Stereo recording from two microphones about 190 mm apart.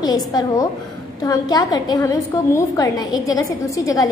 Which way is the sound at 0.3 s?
20° left (ahead or behind).